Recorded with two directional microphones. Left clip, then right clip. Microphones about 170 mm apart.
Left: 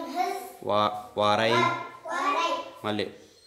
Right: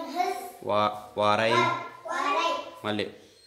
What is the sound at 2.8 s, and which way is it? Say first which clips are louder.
Speech: even; 10° left (ahead or behind).